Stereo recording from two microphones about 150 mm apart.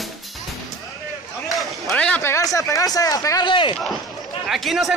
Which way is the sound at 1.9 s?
10° left (ahead or behind).